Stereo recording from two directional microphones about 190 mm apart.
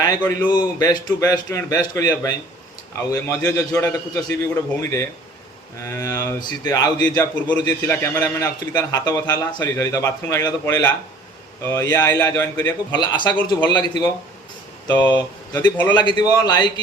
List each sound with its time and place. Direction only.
0.2 s a man's voice: 15° left (ahead or behind)
15.9 s a man's voice: 25° left (ahead or behind)